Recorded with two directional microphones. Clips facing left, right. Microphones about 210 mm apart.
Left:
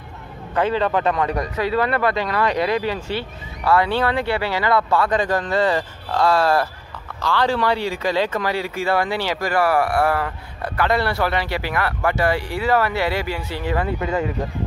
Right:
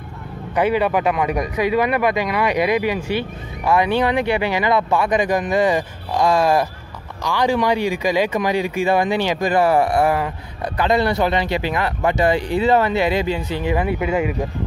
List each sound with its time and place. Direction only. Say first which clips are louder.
0.6 s speech: right 2 dB; 10° right (ahead or behind)